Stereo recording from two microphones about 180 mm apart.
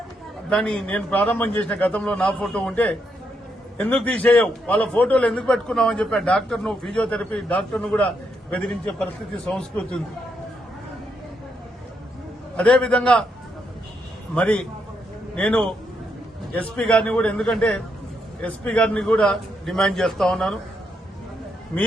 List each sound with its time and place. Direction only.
0.5 s a man's voice: 5° left (ahead or behind)
12.5 s a man's voice: 5° left (ahead or behind)
14.3 s a man's voice: 5° left (ahead or behind)